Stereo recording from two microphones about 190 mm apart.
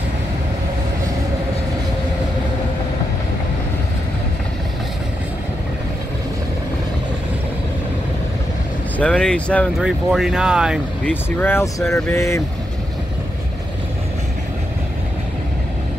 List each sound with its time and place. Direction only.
8.9 s speech: 5° left (ahead or behind)
11.1 s speech: 10° left (ahead or behind)